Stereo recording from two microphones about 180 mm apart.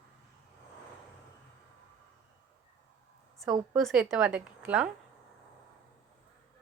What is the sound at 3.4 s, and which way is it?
Speech, 20° right (ahead or behind).